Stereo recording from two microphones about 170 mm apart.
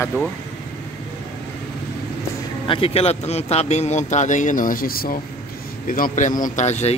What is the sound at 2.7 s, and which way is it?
Speech, 35° left (ahead or behind).